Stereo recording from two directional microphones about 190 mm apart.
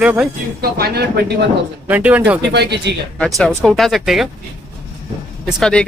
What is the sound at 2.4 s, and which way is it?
Speech, 60° right (ahead or behind).